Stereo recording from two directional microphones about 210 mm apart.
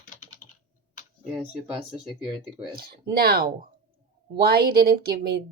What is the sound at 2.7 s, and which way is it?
A woman's voice, 45° right (ahead or behind).